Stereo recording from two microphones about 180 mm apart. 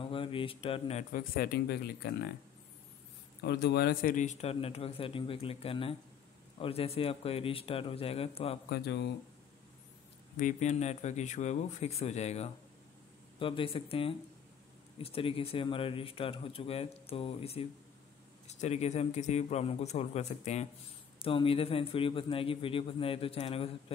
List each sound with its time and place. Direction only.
0.0 s speech: 30° left (ahead or behind)
1.1 s speech: 55° left (ahead or behind)
3.4 s speech: 65° left (ahead or behind); by 8.5 s 35° left (ahead or behind)
8.6 s speech: 65° left (ahead or behind)
10.3 s speech: 45° left (ahead or behind)